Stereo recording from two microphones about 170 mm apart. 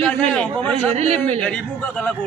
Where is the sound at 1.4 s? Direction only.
5° left (ahead or behind).